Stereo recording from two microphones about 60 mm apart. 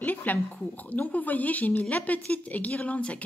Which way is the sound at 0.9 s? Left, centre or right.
Left.